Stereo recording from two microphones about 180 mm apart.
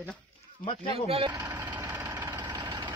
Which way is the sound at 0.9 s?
30° right (ahead or behind).